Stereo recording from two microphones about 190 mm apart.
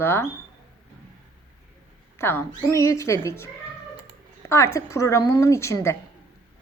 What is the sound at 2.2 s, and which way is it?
A woman's voice, 10° left (ahead or behind).